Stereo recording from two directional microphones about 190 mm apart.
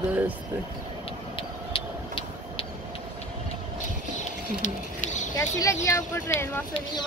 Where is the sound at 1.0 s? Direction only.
30° left (ahead or behind).